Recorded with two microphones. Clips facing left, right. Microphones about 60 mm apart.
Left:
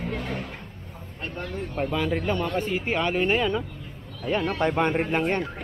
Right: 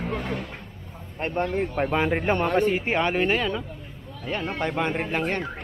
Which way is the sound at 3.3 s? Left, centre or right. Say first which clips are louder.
Left 1 dB; centre.